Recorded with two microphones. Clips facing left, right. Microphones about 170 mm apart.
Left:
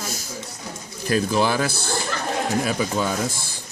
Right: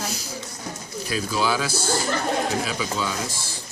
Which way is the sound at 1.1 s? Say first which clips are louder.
Left 4 dB; 50° left (ahead or behind).